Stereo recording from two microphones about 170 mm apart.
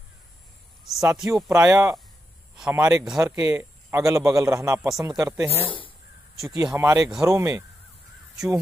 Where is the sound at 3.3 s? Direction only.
15° right (ahead or behind).